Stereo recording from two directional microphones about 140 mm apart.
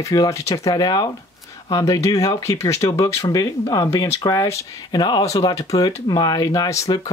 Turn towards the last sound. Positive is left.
turn(degrees=25)  # may be behind; listen again after turning